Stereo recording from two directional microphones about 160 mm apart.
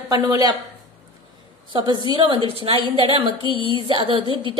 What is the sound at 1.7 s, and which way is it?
A woman's voice, 30° right (ahead or behind).